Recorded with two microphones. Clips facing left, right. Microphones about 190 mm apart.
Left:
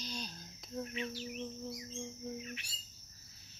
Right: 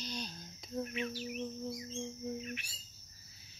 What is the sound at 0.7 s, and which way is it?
Bird, 5° right (ahead or behind).